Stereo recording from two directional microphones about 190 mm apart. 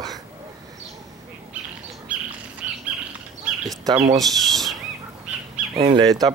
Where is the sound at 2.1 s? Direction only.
5° right (ahead or behind).